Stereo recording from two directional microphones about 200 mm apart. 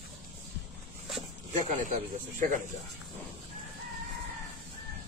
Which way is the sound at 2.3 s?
40° right (ahead or behind).